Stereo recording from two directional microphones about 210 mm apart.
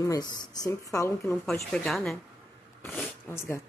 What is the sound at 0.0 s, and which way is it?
Speech, 15° left (ahead or behind).